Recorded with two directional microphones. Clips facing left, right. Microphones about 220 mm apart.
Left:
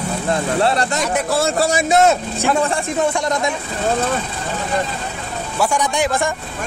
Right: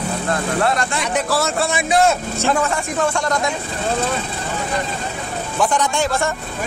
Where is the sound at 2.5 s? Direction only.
30° left (ahead or behind).